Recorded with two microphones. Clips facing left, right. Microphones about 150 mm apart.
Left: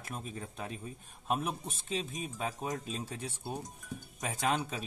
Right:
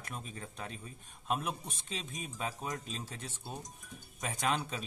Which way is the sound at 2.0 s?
Centre (ahead or behind).